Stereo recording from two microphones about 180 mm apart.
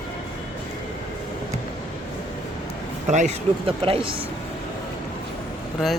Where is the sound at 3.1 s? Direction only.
40° right (ahead or behind).